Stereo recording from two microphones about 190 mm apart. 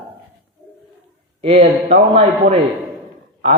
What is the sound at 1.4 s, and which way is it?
A man's voice, 30° right (ahead or behind).